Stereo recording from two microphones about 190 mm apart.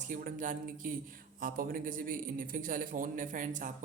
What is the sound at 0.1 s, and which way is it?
A man's voice, 45° right (ahead or behind).